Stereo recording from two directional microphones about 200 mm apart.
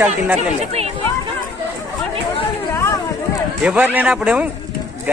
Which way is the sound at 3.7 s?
5° right (ahead or behind).